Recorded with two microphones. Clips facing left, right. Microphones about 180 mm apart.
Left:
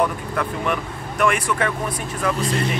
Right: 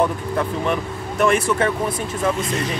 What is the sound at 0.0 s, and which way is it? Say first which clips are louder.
Speech: right 2 dB; 30° right (ahead or behind).